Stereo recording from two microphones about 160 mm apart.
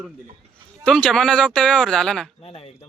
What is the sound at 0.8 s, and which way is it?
Speech, 5° left (ahead or behind).